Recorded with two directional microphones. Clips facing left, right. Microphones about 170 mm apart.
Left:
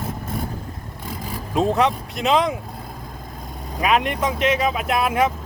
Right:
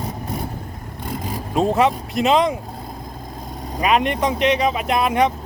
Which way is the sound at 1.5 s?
Centre (ahead or behind).